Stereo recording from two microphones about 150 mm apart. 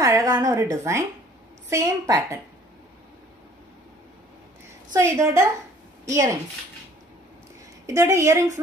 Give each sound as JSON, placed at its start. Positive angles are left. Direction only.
{"t": 0.0, "sound": "a woman's voice", "side_deg": -20}
{"t": 4.9, "sound": "a woman's voice", "side_deg": -20}
{"t": 7.8, "sound": "a woman's voice", "side_deg": -20}